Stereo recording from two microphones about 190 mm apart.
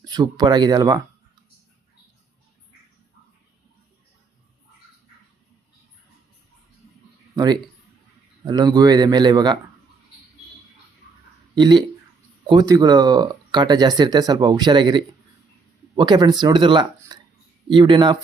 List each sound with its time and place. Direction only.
0.0 s speech: 20° right (ahead or behind)
7.3 s speech: 20° right (ahead or behind)
11.5 s speech: 25° right (ahead or behind)
17.1 s a sound: 20° right (ahead or behind)
17.7 s speech: 25° right (ahead or behind)